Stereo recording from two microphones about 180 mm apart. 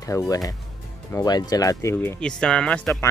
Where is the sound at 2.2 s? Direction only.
5° left (ahead or behind).